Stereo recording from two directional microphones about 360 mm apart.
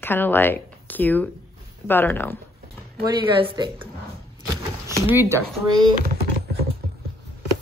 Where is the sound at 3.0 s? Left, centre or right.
Centre.